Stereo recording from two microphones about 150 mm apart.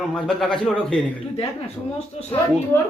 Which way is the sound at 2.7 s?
15° left (ahead or behind).